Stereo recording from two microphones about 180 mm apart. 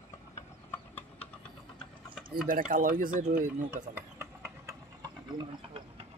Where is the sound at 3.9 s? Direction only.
15° right (ahead or behind).